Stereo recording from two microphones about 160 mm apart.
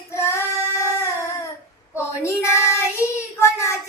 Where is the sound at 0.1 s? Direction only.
15° left (ahead or behind).